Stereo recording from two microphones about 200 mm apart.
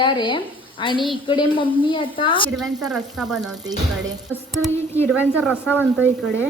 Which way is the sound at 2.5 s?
Centre (ahead or behind).